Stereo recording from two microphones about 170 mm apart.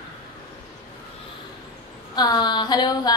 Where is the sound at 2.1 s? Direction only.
25° left (ahead or behind).